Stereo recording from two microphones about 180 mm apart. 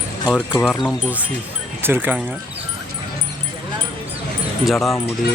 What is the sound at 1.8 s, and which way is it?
Speech, 10° right (ahead or behind).